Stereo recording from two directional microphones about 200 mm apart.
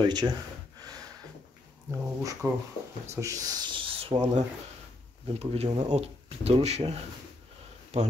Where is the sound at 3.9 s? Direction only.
30° right (ahead or behind).